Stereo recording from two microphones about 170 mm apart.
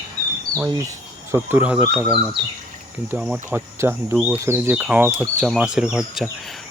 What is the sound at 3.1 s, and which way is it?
Speech, 5° right (ahead or behind).